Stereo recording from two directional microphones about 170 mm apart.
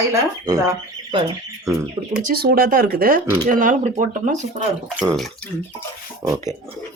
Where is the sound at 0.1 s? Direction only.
20° right (ahead or behind).